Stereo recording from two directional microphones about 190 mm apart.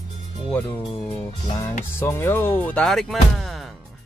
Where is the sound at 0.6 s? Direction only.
25° left (ahead or behind).